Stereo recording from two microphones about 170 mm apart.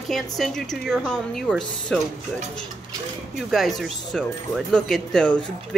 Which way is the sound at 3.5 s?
Centre (ahead or behind).